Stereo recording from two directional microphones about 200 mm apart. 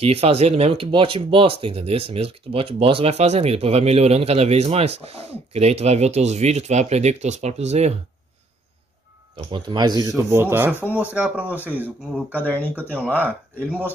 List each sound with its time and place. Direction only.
0.0 s speech: 30° right (ahead or behind)
9.5 s speech: 20° right (ahead or behind)
12.5 s speech: 10° left (ahead or behind)